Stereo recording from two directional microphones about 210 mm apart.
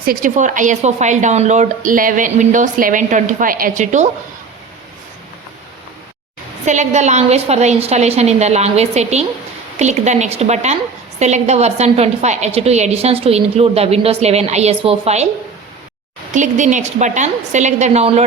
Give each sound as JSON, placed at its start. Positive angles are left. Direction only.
{"t": 0.0, "sound": "speech", "side_deg": -40}
{"t": 6.7, "sound": "a woman's voice", "side_deg": -35}
{"t": 16.3, "sound": "speech", "side_deg": -35}